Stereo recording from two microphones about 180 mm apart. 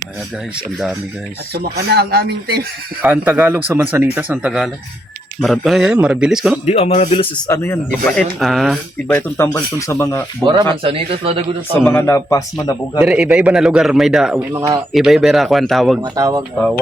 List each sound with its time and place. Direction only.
1.5 s speech: 65° right (ahead or behind)
3.0 s a man's voice: 10° right (ahead or behind)
6.7 s speech: 35° left (ahead or behind)
7.4 s a man's voice: 15° left (ahead or behind); by 8.8 s centre (ahead or behind)
9.0 s speech: 10° left (ahead or behind)
10.4 s speech: 25° right (ahead or behind)
11.9 s speech: 15° left (ahead or behind)
13.0 s a man's voice: 5° right (ahead or behind)
16.0 s speech: 20° right (ahead or behind)